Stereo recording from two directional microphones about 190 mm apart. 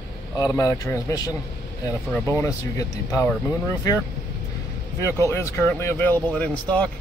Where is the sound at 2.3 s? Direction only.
15° left (ahead or behind).